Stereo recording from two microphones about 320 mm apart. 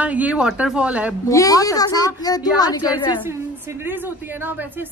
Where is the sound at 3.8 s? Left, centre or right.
Centre.